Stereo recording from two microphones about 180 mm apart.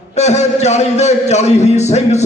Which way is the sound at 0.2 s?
40° left (ahead or behind).